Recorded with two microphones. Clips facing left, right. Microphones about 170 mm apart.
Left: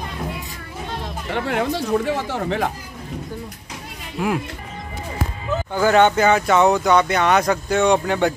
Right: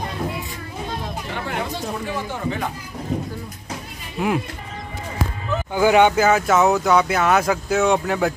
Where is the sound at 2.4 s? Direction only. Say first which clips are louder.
Left 3 dB; 75° left (ahead or behind).